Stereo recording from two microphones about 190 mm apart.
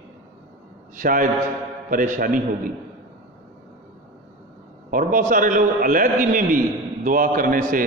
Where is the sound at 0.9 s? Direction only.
45° right (ahead or behind).